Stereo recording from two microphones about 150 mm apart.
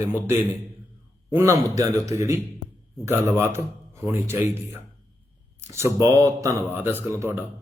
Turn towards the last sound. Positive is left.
turn(degrees=-15)  # may be behind; listen again after turning